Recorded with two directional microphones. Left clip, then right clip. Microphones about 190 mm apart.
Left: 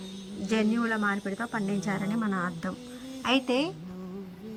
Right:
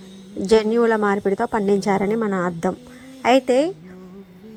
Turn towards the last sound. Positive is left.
turn(degrees=-15)  # may be behind; listen again after turning